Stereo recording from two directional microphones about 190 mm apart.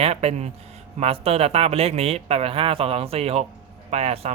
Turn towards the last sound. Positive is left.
turn(degrees=-35)  # may be behind; listen again after turning